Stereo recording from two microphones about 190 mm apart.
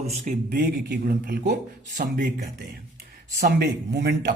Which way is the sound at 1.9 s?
45° right (ahead or behind).